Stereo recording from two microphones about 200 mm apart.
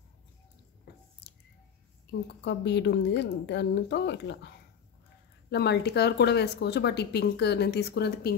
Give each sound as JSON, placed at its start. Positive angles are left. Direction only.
{"t": 2.2, "sound": "a woman's voice", "side_deg": 60}
{"t": 5.5, "sound": "a woman's voice", "side_deg": 55}